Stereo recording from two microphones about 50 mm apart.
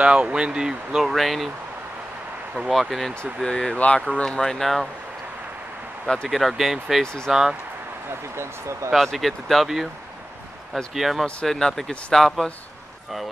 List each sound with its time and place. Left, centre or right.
0.0 s speech: centre
1.0 s speech: centre
2.7 s speech: centre
3.4 s speech: centre
3.7 s speech: left; by 4.8 s centre
6.2 s speech: centre
8.4 s speech: right
8.9 s speech: centre
11.0 s speech: centre
11.4 s speech: centre